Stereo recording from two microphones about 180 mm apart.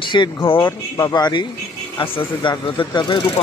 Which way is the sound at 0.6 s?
15° left (ahead or behind).